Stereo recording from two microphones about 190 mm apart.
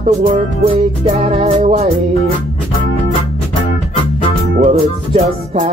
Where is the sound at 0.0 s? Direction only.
45° right (ahead or behind).